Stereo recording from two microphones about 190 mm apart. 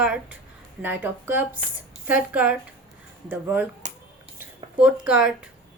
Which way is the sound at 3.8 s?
40° right (ahead or behind).